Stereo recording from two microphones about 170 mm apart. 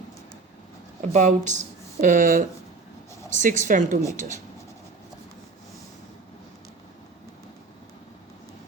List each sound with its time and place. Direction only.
1.0 s a woman's voice: 45° right (ahead or behind)